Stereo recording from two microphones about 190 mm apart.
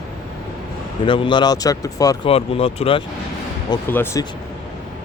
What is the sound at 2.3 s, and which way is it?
Speech, 30° left (ahead or behind).